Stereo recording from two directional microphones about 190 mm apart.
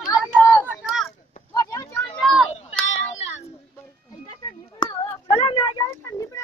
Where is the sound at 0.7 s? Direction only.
5° right (ahead or behind).